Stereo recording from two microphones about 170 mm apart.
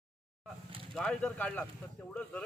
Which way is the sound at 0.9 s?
5° left (ahead or behind).